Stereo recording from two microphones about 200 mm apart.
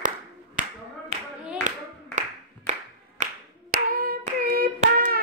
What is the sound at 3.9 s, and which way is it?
Clapping, 45° right (ahead or behind).